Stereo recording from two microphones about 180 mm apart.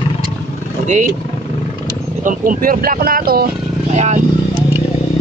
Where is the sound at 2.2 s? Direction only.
50° right (ahead or behind).